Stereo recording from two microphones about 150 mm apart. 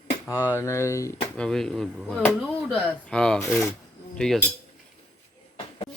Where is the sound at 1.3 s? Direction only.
5° left (ahead or behind).